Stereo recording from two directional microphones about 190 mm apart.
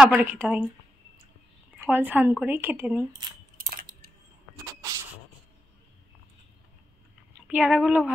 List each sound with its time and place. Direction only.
0.0 s a woman's voice: 5° right (ahead or behind)
1.9 s a woman's voice: 10° right (ahead or behind)
3.1 s speech: 25° right (ahead or behind)
3.5 s a sound: 50° right (ahead or behind)
7.4 s a woman's voice: 5° right (ahead or behind)